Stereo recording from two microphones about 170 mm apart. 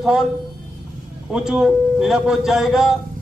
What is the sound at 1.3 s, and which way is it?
Speech, 5° right (ahead or behind).